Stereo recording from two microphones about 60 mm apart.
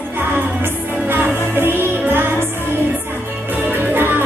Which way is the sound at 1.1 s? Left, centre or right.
Right.